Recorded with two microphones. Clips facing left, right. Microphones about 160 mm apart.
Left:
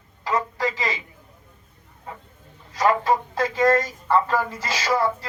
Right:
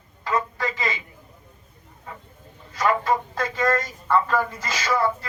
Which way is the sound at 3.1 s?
30° left (ahead or behind).